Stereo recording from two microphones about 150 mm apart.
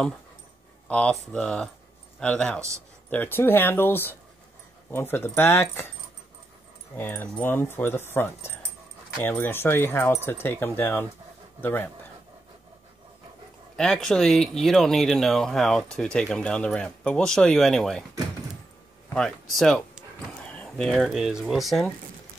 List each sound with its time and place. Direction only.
0.8 s speech: 10° left (ahead or behind)
7.0 s speech: 15° left (ahead or behind)
13.7 s speech: 5° left (ahead or behind)
19.1 s speech: 5° left (ahead or behind)